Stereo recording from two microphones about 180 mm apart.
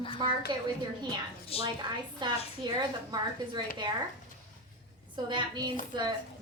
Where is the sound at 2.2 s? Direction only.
25° right (ahead or behind).